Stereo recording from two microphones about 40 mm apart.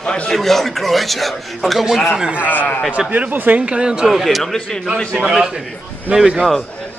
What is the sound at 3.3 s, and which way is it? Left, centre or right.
Speech, right.